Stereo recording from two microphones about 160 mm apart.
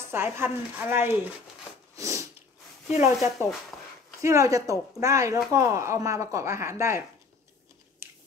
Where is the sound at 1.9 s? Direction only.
20° right (ahead or behind).